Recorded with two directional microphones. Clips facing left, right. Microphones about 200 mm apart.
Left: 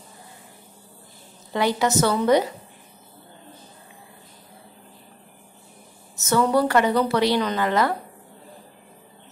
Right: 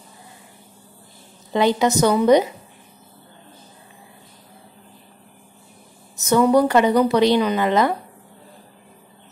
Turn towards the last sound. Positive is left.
turn(degrees=-20)  # may be behind; listen again after turning